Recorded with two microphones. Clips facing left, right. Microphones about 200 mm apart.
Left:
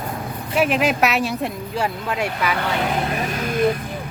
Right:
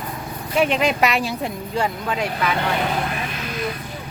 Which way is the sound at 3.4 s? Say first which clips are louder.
Left 10 dB; 50° left (ahead or behind).